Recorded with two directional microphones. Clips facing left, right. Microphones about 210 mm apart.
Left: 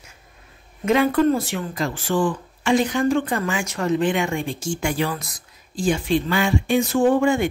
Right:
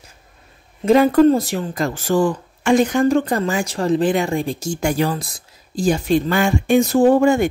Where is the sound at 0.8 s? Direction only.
35° right (ahead or behind).